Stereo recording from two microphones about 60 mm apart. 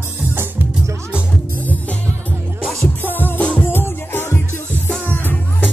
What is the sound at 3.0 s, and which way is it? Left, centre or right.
Music, left.